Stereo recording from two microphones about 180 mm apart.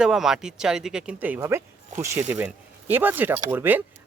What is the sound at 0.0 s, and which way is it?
Speech, 5° right (ahead or behind).